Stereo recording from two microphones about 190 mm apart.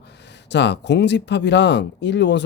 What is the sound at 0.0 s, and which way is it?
Speech, 65° left (ahead or behind).